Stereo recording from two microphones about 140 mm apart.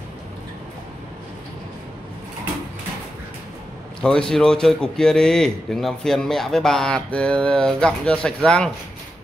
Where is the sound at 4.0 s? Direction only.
5° left (ahead or behind).